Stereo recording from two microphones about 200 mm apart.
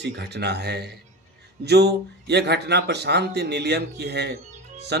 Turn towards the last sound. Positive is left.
turn(degrees=-55)  # may be behind; listen again after turning